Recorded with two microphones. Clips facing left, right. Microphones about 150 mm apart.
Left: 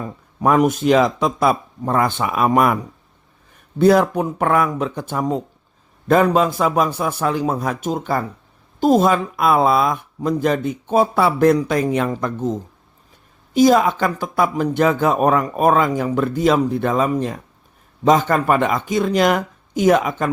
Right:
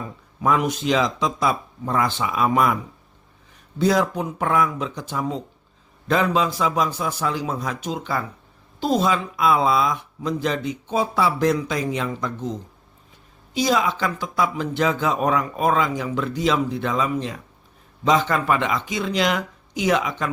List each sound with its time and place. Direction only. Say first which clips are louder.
0.3 s speech: left 6 dB; 45° left (ahead or behind)
3.8 s speech: left 6 dB; 55° left (ahead or behind)